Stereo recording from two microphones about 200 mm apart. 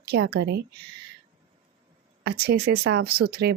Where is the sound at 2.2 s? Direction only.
55° right (ahead or behind).